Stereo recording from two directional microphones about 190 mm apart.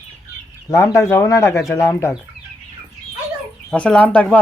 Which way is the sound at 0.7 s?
15° left (ahead or behind).